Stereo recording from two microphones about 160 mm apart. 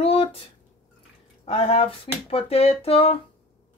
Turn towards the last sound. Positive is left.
turn(degrees=35)  # may be behind; listen again after turning